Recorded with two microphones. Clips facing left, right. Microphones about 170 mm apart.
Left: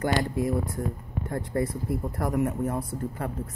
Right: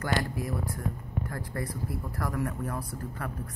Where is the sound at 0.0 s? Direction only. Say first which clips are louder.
Left 5 dB; 25° left (ahead or behind).